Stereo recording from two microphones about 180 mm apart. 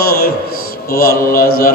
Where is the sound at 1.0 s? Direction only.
55° left (ahead or behind).